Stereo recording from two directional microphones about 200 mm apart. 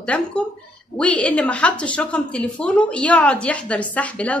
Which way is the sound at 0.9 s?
5° left (ahead or behind).